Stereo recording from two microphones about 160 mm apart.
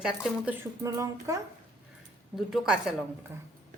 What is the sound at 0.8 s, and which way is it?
Speech, 20° right (ahead or behind).